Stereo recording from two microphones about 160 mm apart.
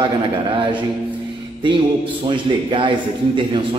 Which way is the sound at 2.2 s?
30° right (ahead or behind).